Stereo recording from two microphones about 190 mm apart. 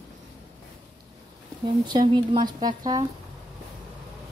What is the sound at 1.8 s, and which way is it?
A woman's voice, 25° right (ahead or behind).